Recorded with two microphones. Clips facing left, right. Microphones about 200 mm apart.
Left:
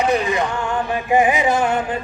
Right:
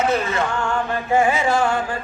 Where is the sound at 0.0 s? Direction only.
15° left (ahead or behind).